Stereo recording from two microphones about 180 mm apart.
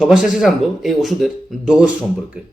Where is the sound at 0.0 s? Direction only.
5° right (ahead or behind).